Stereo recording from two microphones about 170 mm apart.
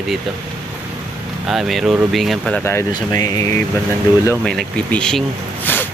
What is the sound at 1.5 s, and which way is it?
Speech, centre (ahead or behind).